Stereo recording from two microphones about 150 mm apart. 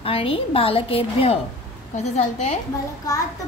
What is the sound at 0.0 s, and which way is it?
A woman's voice, 35° left (ahead or behind).